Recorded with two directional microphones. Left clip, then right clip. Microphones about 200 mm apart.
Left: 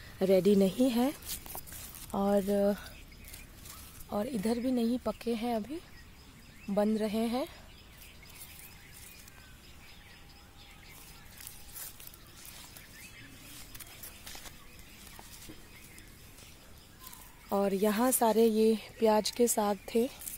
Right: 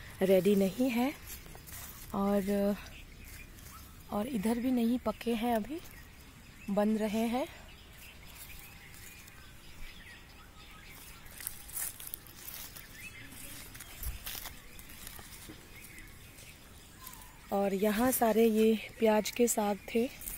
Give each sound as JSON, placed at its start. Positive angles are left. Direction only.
{"t": 0.2, "sound": "a woman's voice", "side_deg": 15}
{"t": 2.0, "sound": "a woman's voice", "side_deg": 10}
{"t": 4.1, "sound": "a woman's voice", "side_deg": 10}
{"t": 5.2, "sound": "speech", "side_deg": 0}
{"t": 6.7, "sound": "a woman's voice", "side_deg": 15}
{"t": 17.5, "sound": "a woman's voice", "side_deg": 20}